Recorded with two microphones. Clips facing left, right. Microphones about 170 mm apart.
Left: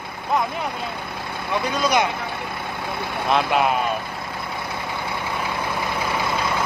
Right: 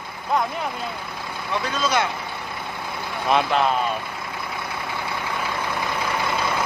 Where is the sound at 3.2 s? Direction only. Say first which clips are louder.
Even; centre (ahead or behind).